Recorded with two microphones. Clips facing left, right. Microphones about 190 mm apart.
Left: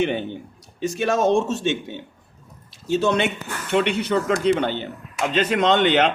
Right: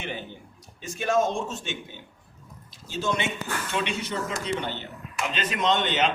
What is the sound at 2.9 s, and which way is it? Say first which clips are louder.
A man's voice: left 8 dB; 65° left (ahead or behind).